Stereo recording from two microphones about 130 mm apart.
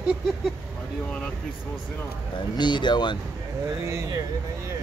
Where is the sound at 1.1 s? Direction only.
5° left (ahead or behind).